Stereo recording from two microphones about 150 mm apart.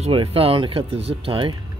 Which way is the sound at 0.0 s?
40° right (ahead or behind).